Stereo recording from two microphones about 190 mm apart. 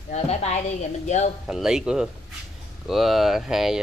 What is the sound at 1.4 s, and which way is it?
Speech, 5° right (ahead or behind).